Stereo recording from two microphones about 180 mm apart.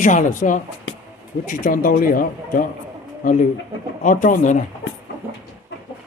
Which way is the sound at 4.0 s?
45° left (ahead or behind).